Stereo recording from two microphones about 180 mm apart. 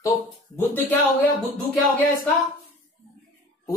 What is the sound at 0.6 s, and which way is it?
Speech, 10° left (ahead or behind).